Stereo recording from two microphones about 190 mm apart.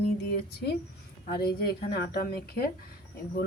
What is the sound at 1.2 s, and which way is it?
Speech, 55° left (ahead or behind).